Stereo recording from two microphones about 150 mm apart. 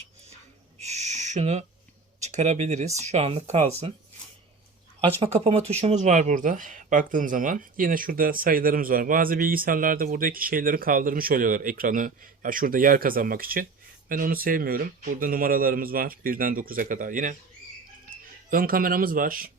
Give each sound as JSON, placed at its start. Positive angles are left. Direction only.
{"t": 0.8, "sound": "owl", "side_deg": -50}
{"t": 2.2, "sound": "speech", "side_deg": -50}
{"t": 5.2, "sound": "speech", "side_deg": -45}
{"t": 18.5, "sound": "speech", "side_deg": -75}